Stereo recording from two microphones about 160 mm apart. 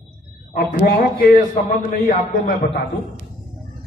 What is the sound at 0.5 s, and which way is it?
Speech, 65° left (ahead or behind).